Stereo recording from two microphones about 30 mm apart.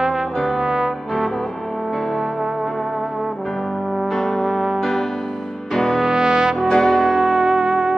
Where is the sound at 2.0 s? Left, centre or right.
Centre.